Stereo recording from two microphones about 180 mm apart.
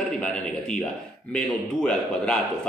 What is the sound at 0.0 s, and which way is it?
A man's voice, 5° left (ahead or behind).